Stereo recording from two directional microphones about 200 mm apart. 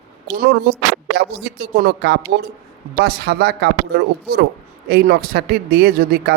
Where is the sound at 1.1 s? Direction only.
55° right (ahead or behind).